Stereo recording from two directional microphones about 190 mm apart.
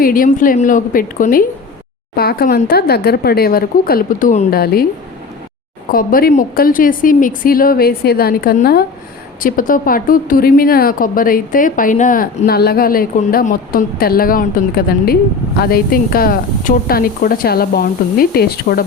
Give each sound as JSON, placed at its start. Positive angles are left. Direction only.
{"t": 0.0, "sound": "a woman's voice", "side_deg": 45}
{"t": 5.9, "sound": "a woman's voice", "side_deg": 50}